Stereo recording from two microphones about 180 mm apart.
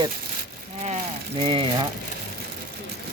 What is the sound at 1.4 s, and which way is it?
Speech, 30° right (ahead or behind).